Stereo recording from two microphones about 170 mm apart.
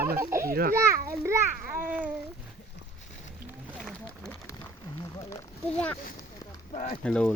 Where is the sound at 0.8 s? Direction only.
15° right (ahead or behind).